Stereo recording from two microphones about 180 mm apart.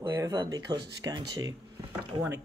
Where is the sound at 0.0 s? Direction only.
20° right (ahead or behind).